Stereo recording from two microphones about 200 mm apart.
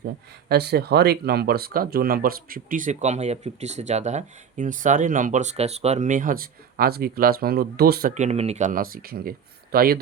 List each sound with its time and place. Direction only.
0.4 s speech: 55° right (ahead or behind)